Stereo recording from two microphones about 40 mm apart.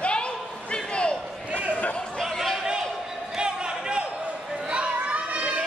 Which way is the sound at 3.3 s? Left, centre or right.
Right.